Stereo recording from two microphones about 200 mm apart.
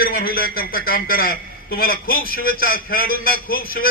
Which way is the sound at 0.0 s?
45° left (ahead or behind).